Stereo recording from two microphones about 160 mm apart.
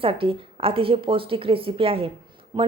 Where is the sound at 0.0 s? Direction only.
35° right (ahead or behind).